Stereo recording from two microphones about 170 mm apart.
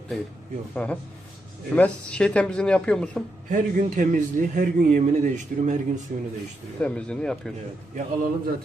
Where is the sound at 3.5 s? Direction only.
50° right (ahead or behind).